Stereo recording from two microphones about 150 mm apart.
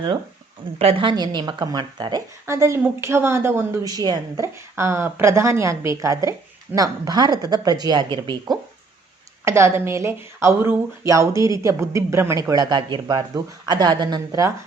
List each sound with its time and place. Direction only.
0.8 s speech: 40° right (ahead or behind)
2.5 s speech: 20° right (ahead or behind)
9.4 s speech: 20° right (ahead or behind)